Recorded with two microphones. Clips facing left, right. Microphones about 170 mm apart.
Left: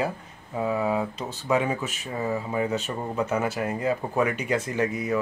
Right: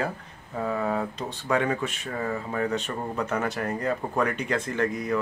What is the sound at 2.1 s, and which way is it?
Speech, 20° left (ahead or behind).